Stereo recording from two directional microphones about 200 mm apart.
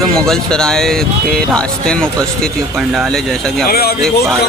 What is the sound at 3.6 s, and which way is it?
Speech, 50° left (ahead or behind).